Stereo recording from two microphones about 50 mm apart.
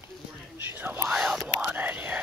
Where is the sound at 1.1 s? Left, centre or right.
Centre.